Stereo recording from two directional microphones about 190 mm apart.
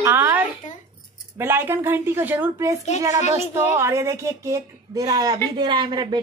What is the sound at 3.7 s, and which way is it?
A woman's voice, 15° right (ahead or behind).